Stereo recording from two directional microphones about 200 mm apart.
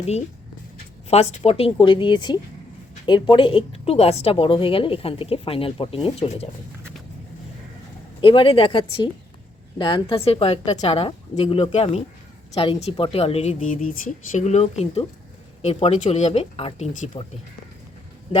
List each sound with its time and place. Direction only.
1.1 s a woman's voice: 30° left (ahead or behind)
8.2 s a woman's voice: 25° left (ahead or behind)